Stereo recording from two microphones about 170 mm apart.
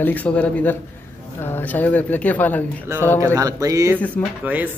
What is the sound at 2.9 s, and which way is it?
Speech, 15° right (ahead or behind).